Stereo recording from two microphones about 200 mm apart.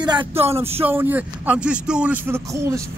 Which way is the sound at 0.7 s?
10° right (ahead or behind).